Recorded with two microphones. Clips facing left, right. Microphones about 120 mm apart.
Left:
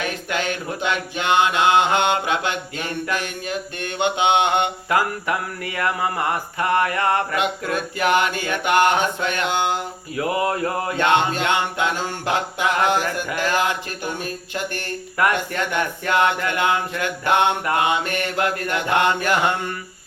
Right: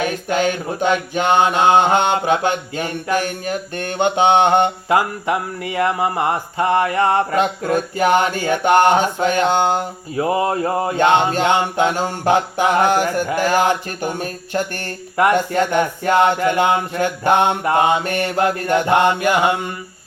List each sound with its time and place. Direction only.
0.3 s mantra: 40° right (ahead or behind)
4.9 s music: 25° right (ahead or behind)
7.3 s mantra: 35° right (ahead or behind)
10.2 s music: 25° right (ahead or behind)
11.3 s mantra: 35° right (ahead or behind)
14.0 s mantra: 40° right (ahead or behind)
15.1 s music: 25° right (ahead or behind)